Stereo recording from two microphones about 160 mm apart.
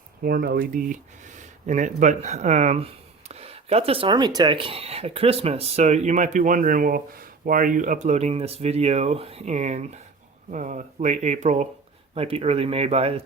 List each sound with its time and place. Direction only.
0.2 s speech: 65° right (ahead or behind); by 13.2 s 35° right (ahead or behind)